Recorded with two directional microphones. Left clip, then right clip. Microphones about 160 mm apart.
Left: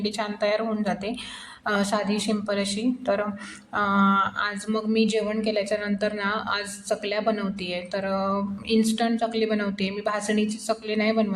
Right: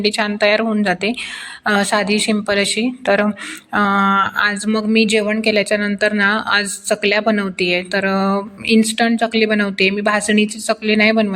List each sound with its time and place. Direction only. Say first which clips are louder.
0.0 s a woman's voice: right 10 dB; 30° right (ahead or behind)